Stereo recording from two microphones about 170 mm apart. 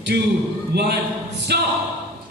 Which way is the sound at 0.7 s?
75° right (ahead or behind).